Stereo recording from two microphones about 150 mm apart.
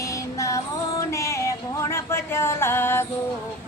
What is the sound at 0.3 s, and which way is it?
Music, 20° left (ahead or behind).